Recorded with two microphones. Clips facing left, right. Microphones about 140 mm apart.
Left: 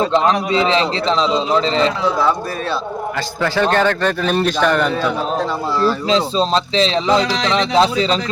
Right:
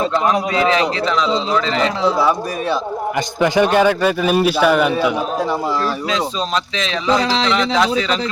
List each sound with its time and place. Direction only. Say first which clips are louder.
0.0 s a man's voice: left 1 dB; 25° left (ahead or behind)
2.1 s a man's voice: right 1 dB; 10° right (ahead or behind)
6.1 s speech: left 4 dB; 30° left (ahead or behind)